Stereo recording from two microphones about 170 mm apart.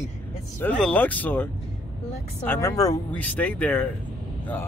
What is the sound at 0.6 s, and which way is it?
Speech, 5° left (ahead or behind).